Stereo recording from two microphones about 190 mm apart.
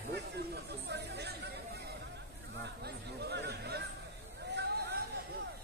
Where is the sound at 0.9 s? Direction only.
60° right (ahead or behind).